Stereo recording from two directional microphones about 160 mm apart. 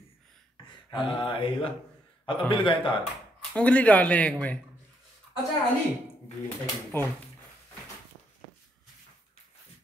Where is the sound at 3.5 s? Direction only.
5° left (ahead or behind).